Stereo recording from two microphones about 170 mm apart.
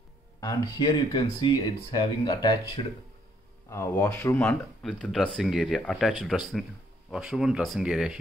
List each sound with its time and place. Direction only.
0.4 s speech: 25° left (ahead or behind)
4.5 s speech: 5° left (ahead or behind)